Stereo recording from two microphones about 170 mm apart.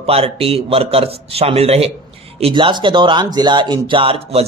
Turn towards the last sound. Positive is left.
turn(degrees=-35)  # may be behind; listen again after turning